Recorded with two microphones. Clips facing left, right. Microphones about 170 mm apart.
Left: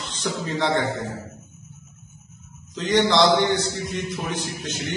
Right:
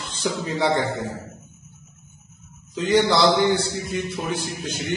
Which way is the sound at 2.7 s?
5° right (ahead or behind).